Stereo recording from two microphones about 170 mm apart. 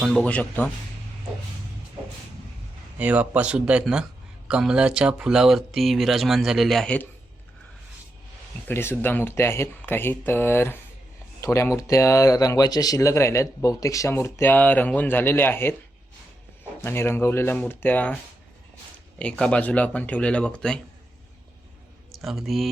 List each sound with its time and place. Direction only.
0.0 s speech: 5° left (ahead or behind)
3.0 s speech: 10° right (ahead or behind)
8.6 s speech: 15° left (ahead or behind)
16.8 s speech: 15° left (ahead or behind)
19.2 s speech: 5° left (ahead or behind)
22.1 s speech: centre (ahead or behind)